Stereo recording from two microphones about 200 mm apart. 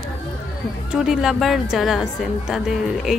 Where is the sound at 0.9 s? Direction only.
5° right (ahead or behind).